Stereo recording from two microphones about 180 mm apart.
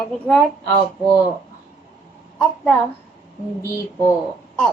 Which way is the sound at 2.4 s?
5° left (ahead or behind).